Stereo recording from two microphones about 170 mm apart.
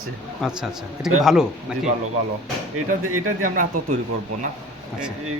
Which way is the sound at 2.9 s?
50° right (ahead or behind).